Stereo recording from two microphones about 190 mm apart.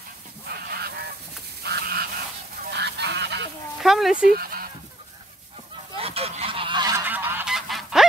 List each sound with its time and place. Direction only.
0.7 s goose: 55° right (ahead or behind)
3.8 s a sound: centre (ahead or behind)
4.3 s fowl: 50° right (ahead or behind)
5.9 s goose: 30° right (ahead or behind)
7.1 s goose: 10° right (ahead or behind)